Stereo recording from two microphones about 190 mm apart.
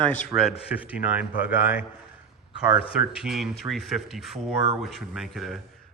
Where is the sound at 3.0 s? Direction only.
5° right (ahead or behind).